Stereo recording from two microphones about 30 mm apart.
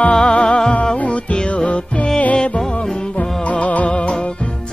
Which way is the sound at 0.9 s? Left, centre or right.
Left.